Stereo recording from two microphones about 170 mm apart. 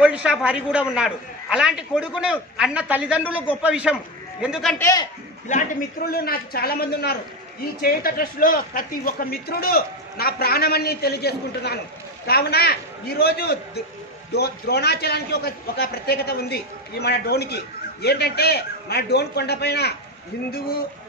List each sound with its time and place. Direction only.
0.0 s a man's voice: 5° right (ahead or behind)
4.7 s a man's voice: 20° left (ahead or behind)
5.5 s a man's voice: 55° left (ahead or behind)